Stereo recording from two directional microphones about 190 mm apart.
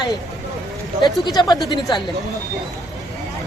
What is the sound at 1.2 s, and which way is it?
Speech, 20° left (ahead or behind).